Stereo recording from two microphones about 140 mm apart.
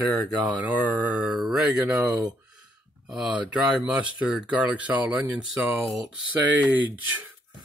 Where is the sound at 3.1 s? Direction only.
5° right (ahead or behind).